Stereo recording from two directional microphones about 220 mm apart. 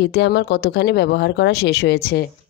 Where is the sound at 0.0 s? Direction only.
50° left (ahead or behind).